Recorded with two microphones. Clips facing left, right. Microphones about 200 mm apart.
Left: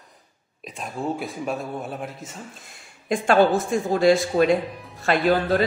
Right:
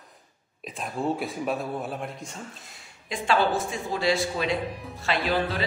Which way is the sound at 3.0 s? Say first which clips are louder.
Left 6 dB; 50° left (ahead or behind).